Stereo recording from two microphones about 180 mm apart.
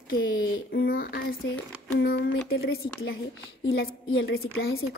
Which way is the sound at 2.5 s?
90° left.